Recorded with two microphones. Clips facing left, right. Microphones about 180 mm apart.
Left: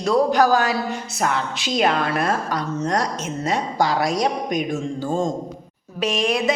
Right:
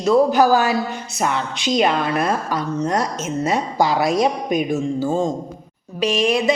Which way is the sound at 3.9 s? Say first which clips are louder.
Right 5 dB; 25° right (ahead or behind).